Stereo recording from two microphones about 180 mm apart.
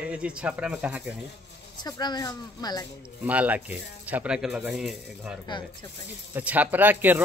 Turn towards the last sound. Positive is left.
turn(degrees=-10)  # may be behind; listen again after turning